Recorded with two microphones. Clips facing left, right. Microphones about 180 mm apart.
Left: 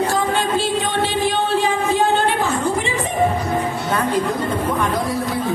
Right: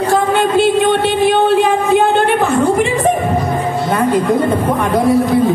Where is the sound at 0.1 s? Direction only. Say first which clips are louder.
Right 7 dB; 60° right (ahead or behind).